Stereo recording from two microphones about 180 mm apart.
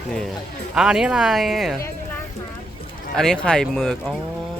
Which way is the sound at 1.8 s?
15° left (ahead or behind).